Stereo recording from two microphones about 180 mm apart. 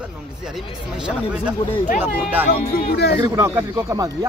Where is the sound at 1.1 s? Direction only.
5° right (ahead or behind).